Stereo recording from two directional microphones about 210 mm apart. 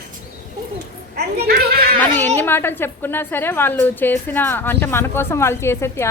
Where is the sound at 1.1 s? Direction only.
50° right (ahead or behind).